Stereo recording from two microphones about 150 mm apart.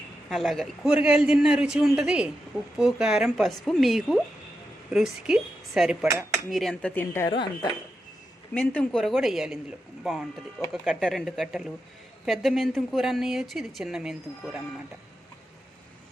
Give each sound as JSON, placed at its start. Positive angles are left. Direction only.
{"t": 0.3, "sound": "a woman's voice", "side_deg": 0}
{"t": 7.3, "sound": "speech", "side_deg": 30}
{"t": 8.5, "sound": "a woman's voice", "side_deg": 10}